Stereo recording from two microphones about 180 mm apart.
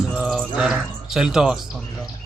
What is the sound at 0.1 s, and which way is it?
Music, centre (ahead or behind).